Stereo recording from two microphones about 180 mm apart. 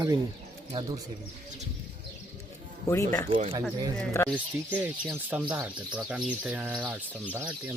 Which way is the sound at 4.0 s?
10° left (ahead or behind).